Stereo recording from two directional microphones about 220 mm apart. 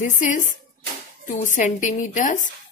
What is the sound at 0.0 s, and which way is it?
A woman's voice, 35° left (ahead or behind).